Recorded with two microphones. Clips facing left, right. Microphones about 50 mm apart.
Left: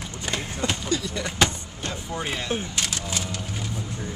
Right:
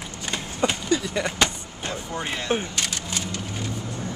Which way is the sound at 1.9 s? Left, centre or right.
Centre.